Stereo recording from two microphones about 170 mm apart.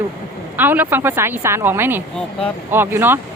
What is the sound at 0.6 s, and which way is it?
Speech, 10° right (ahead or behind).